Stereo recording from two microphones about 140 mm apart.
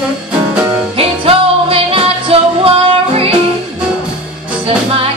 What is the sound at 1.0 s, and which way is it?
Music, 45° right (ahead or behind).